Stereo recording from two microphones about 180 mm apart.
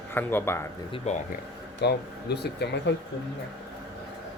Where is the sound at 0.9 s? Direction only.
35° left (ahead or behind).